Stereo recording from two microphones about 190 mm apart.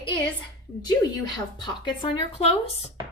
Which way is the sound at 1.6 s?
30° left (ahead or behind).